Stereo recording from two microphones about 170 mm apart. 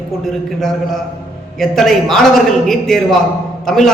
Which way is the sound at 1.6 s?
Centre (ahead or behind).